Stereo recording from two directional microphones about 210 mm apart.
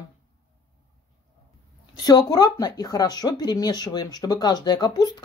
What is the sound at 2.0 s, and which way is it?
Speech, 20° left (ahead or behind).